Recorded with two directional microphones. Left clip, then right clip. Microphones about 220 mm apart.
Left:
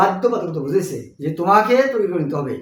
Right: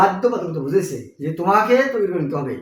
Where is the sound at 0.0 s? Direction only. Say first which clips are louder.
Even; centre (ahead or behind).